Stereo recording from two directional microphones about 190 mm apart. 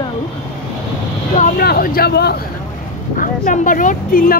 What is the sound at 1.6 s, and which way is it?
Speech, 55° left (ahead or behind).